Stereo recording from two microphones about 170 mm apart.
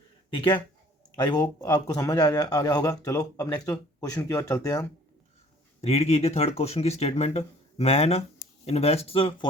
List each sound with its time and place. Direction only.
0.3 s a man's voice: 30° left (ahead or behind)
5.8 s speech: 40° left (ahead or behind)